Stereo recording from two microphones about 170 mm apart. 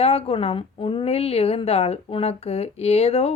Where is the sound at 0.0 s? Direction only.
35° left (ahead or behind).